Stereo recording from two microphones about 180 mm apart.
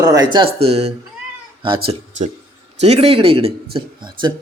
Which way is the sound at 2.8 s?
35° right (ahead or behind).